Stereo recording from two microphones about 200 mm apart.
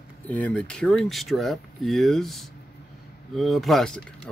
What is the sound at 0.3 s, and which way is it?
Speech, 5° left (ahead or behind).